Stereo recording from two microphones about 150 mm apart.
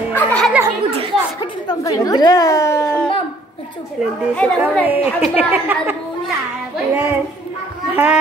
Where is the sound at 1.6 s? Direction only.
25° left (ahead or behind).